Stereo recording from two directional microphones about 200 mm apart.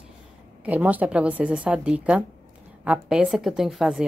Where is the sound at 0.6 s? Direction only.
10° right (ahead or behind).